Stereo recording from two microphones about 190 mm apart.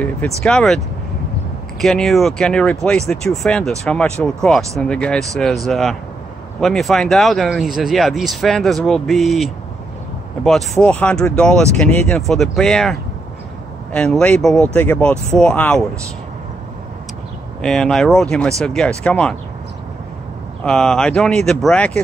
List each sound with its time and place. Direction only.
0.4 s speech: centre (ahead or behind)
1.8 s speech: centre (ahead or behind)
13.9 s speech: 5° left (ahead or behind)
17.6 s speech: 5° left (ahead or behind)
20.6 s speech: 5° left (ahead or behind)